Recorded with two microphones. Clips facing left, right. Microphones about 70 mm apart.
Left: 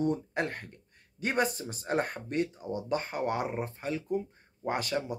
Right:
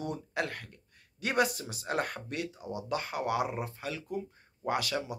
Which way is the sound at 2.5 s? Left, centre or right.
Centre.